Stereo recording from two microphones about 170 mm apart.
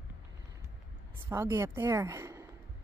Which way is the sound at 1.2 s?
15° right (ahead or behind).